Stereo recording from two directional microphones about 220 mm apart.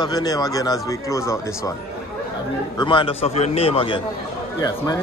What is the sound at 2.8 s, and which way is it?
A man's voice, 25° left (ahead or behind).